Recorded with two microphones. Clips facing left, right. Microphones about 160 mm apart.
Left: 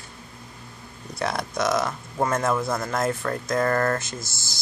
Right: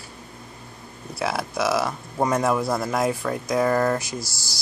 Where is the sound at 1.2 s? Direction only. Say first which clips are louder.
Right 1 dB; 5° right (ahead or behind).